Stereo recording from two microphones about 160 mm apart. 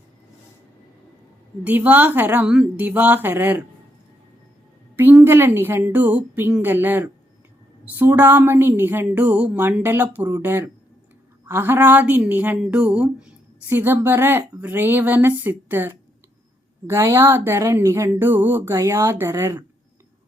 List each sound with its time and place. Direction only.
1.6 s speech: 10° right (ahead or behind)
4.9 s speech: 15° right (ahead or behind)